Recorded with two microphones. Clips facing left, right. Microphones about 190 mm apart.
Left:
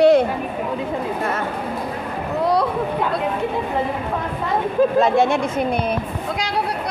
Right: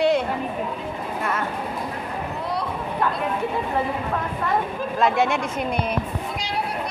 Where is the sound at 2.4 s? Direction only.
90° left.